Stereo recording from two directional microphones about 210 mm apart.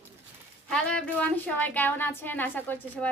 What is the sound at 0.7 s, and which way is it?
Speech, 5° left (ahead or behind).